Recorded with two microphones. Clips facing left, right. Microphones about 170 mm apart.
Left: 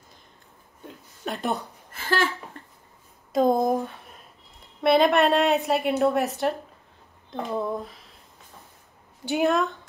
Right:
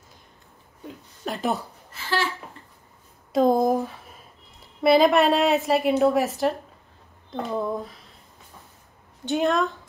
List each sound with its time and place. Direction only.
0.8 s a woman's voice: centre (ahead or behind)
1.9 s a sound: 50° left (ahead or behind)
3.3 s a woman's voice: centre (ahead or behind)
9.4 s a woman's voice: centre (ahead or behind)